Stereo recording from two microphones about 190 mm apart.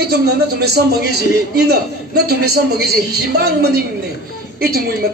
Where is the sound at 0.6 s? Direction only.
60° right (ahead or behind).